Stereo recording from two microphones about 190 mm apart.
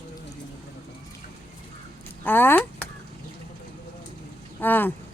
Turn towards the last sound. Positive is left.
turn(degrees=10)  # may be behind; listen again after turning